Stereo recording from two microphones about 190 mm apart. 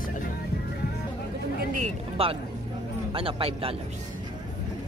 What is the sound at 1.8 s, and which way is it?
A man's voice, 30° right (ahead or behind).